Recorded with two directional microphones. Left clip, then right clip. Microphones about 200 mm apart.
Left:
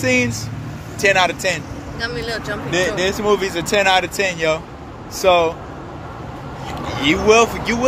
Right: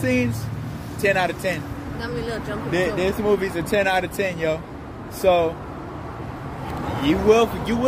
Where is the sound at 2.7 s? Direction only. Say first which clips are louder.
Left 3 dB; centre (ahead or behind).